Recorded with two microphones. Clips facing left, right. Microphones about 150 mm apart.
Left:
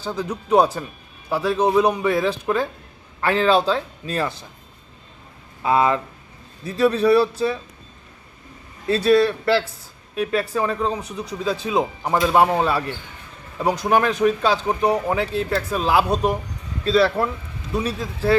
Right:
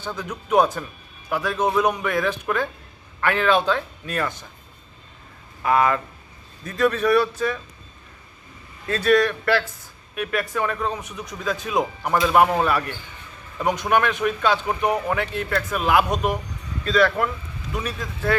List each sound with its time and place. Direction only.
0.0 s speech: 35° left (ahead or behind)
5.6 s speech: 25° left (ahead or behind)
9.0 s speech: 30° left (ahead or behind)